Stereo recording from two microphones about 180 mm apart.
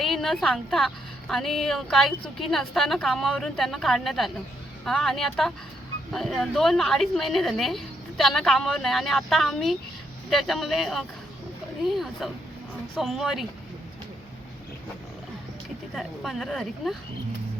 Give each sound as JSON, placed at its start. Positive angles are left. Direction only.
{"t": 0.0, "sound": "a woman's voice", "side_deg": 0}
{"t": 12.2, "sound": "a woman's voice", "side_deg": 0}
{"t": 16.0, "sound": "a woman's voice", "side_deg": 0}